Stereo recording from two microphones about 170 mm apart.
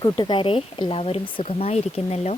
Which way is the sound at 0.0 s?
25° left (ahead or behind).